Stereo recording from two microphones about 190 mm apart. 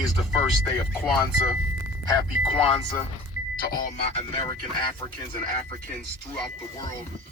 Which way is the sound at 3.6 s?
45° left (ahead or behind).